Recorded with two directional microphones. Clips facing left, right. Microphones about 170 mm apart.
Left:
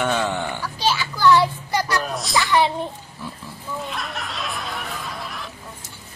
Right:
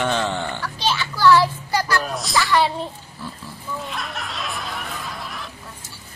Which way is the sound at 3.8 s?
Centre (ahead or behind).